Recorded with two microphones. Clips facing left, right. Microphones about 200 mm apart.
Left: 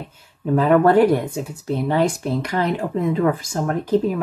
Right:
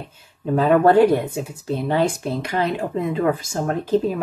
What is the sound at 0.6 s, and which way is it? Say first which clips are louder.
Speech: even; 25° right (ahead or behind).